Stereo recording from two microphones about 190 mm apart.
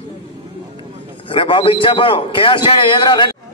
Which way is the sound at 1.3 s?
25° left (ahead or behind).